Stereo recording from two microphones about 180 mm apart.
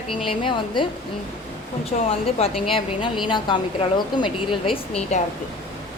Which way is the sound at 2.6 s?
30° left (ahead or behind).